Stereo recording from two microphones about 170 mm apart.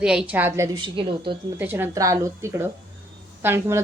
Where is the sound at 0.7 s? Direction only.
30° right (ahead or behind).